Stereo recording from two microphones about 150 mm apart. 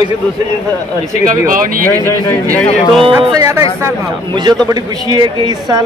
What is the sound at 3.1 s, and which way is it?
Speech, 20° right (ahead or behind).